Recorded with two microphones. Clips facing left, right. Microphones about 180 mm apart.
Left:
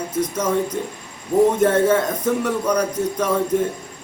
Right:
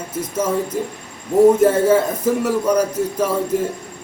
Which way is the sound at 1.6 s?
5° right (ahead or behind).